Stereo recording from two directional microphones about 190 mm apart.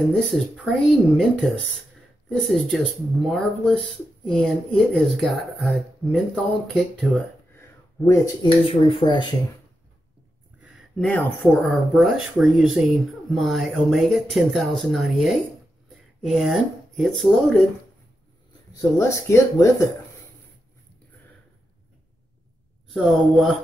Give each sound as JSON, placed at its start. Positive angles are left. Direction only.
{"t": 0.1, "sound": "speech", "side_deg": 0}
{"t": 8.1, "sound": "speech", "side_deg": 25}
{"t": 10.6, "sound": "speech", "side_deg": 0}
{"t": 18.7, "sound": "speech", "side_deg": 15}
{"t": 22.8, "sound": "speech", "side_deg": 0}